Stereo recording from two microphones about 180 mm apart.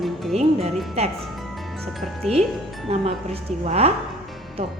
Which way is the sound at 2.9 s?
35° right (ahead or behind).